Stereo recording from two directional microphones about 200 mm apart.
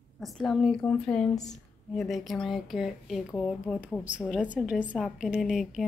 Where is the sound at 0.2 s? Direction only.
Centre (ahead or behind).